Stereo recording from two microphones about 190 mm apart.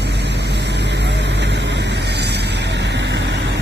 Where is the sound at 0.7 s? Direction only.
65° right (ahead or behind).